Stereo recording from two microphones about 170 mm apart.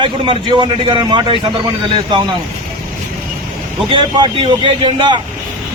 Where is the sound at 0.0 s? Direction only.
30° right (ahead or behind).